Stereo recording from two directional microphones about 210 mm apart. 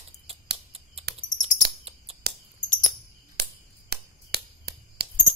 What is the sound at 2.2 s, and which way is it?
Bird, 50° right (ahead or behind).